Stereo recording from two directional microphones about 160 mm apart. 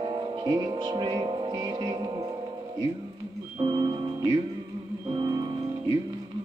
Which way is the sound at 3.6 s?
30° right (ahead or behind).